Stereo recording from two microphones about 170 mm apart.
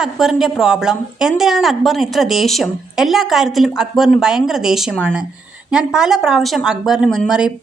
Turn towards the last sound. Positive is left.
turn(degrees=-5)  # may be behind; listen again after turning